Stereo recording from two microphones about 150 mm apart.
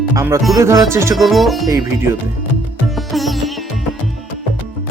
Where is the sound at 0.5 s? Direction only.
20° right (ahead or behind).